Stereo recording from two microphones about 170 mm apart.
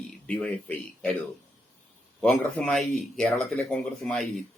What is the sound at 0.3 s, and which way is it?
Speech, 10° left (ahead or behind).